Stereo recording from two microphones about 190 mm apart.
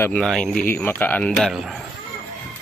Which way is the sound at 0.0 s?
5° left (ahead or behind).